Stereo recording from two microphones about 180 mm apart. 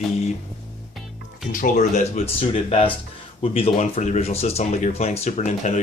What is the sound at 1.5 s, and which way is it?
Speech, 50° left (ahead or behind).